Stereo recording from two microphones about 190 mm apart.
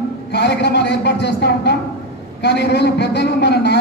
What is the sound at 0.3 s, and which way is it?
A woman's voice, 65° left (ahead or behind).